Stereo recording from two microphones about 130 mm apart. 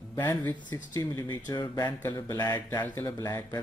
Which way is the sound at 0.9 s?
30° left (ahead or behind).